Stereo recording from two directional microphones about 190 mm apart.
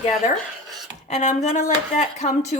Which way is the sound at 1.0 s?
35° left (ahead or behind).